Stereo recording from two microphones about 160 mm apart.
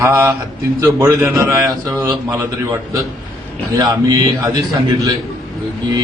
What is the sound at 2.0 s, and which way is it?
Mantra, 20° right (ahead or behind).